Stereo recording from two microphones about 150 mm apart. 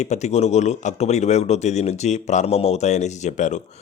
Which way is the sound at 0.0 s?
50° left (ahead or behind).